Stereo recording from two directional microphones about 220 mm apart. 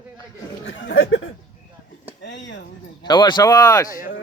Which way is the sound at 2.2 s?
55° left (ahead or behind).